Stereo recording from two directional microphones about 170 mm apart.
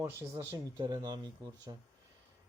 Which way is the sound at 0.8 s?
25° right (ahead or behind).